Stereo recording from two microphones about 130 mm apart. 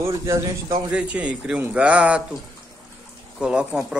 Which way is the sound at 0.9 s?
10° right (ahead or behind).